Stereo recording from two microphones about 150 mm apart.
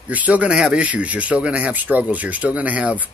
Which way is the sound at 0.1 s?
10° right (ahead or behind).